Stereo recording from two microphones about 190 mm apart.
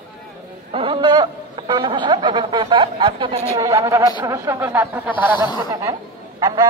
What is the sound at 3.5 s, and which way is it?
A man's voice, 20° right (ahead or behind).